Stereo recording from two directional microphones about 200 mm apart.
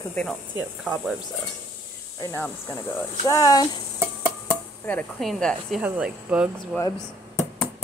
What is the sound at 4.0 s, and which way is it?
Music, 10° right (ahead or behind).